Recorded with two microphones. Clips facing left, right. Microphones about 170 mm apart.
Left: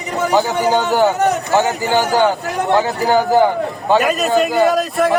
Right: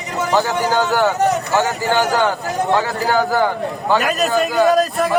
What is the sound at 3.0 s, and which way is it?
Speech, 20° left (ahead or behind).